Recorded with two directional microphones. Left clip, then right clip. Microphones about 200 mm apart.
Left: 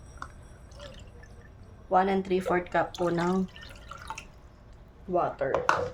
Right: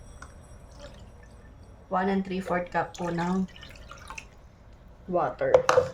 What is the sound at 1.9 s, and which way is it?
Speech, 40° left (ahead or behind).